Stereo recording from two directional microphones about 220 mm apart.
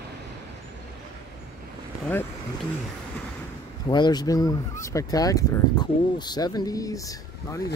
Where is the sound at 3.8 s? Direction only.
20° left (ahead or behind).